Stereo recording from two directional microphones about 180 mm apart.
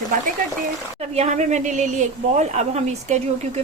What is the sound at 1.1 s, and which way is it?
Speech, 40° right (ahead or behind).